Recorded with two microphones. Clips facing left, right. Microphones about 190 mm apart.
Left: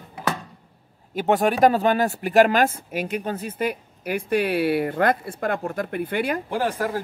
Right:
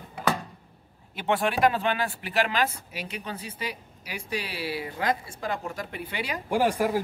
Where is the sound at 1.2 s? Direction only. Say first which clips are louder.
Left 6 dB; 40° left (ahead or behind).